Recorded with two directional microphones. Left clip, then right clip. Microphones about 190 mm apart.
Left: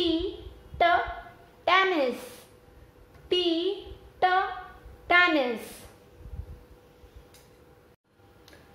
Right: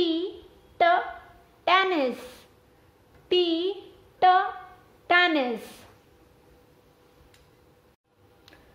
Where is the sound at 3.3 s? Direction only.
50° right (ahead or behind).